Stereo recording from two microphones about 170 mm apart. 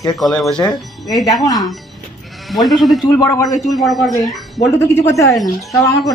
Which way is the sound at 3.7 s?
Centre (ahead or behind).